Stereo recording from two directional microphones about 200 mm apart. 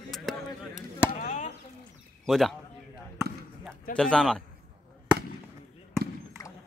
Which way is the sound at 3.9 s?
5° left (ahead or behind).